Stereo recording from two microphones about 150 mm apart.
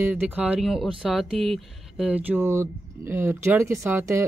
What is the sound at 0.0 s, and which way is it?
Speech, 10° right (ahead or behind).